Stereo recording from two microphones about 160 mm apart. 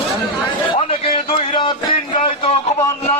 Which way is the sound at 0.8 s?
40° left (ahead or behind).